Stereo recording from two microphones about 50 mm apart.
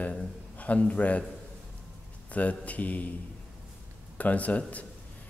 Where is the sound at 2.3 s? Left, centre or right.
Left.